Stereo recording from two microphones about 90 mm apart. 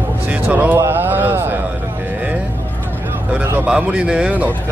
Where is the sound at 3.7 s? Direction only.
10° right (ahead or behind).